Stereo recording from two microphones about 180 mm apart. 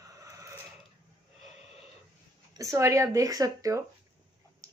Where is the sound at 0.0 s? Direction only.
20° right (ahead or behind).